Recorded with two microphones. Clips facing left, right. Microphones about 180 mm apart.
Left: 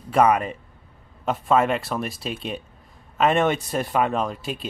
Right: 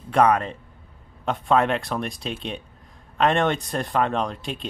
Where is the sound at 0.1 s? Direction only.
5° left (ahead or behind).